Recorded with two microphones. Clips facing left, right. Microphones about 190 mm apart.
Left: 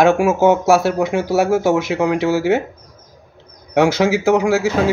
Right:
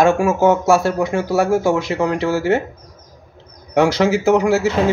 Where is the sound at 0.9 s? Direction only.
15° left (ahead or behind).